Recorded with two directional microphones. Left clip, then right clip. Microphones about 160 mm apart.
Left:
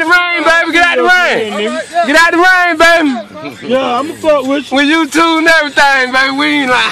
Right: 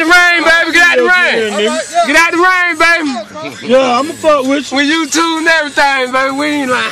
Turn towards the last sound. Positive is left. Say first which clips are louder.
# left 3 dB
turn(degrees=5)  # may be behind; listen again after turning